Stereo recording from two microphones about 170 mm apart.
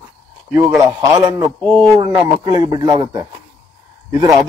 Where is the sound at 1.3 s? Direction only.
25° right (ahead or behind).